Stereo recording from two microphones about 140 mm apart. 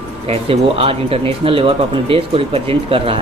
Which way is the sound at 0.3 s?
45° right (ahead or behind).